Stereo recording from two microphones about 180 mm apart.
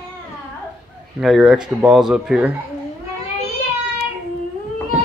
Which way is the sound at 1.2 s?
Centre (ahead or behind).